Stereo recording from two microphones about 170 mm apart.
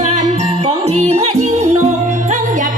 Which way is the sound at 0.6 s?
40° right (ahead or behind).